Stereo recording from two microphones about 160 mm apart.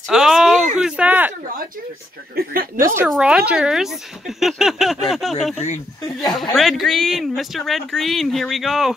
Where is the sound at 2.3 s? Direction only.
70° right (ahead or behind).